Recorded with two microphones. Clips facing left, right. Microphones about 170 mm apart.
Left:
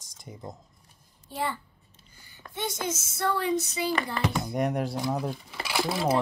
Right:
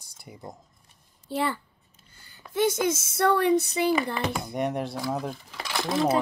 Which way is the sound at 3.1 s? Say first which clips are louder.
Right 5 dB; 65° right (ahead or behind).